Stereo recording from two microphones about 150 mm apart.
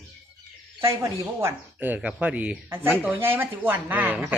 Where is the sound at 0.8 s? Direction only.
15° right (ahead or behind).